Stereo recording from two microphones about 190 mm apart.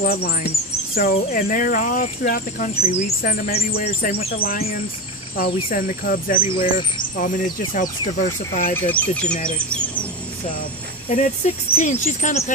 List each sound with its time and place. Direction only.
0.0 s speech: 50° left (ahead or behind)
8.7 s speech: 10° left (ahead or behind)
11.1 s speech: 40° left (ahead or behind)